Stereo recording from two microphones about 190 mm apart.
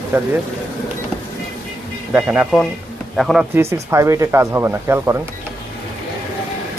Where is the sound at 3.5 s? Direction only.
15° right (ahead or behind).